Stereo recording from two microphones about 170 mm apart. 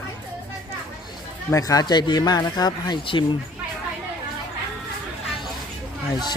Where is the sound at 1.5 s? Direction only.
20° left (ahead or behind).